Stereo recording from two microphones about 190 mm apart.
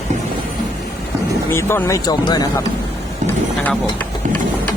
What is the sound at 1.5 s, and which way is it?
Speech, 15° left (ahead or behind).